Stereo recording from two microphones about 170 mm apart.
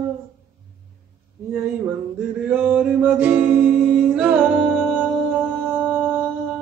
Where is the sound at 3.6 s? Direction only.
55° right (ahead or behind).